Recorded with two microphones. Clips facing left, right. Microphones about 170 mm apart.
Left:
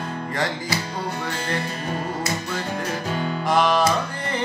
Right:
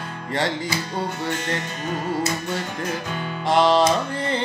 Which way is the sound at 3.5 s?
25° right (ahead or behind).